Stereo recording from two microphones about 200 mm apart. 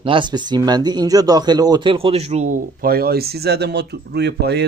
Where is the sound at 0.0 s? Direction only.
25° right (ahead or behind).